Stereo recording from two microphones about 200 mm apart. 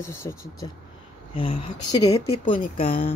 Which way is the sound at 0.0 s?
15° left (ahead or behind).